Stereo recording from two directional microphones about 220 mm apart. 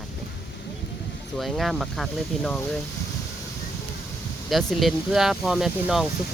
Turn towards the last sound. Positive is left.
turn(degrees=0)  # may be behind; listen again after turning